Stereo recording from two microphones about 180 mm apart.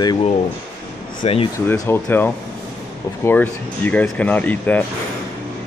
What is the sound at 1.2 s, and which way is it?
Speech, 30° left (ahead or behind).